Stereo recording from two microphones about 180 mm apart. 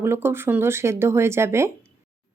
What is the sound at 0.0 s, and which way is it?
A woman's voice, 15° right (ahead or behind).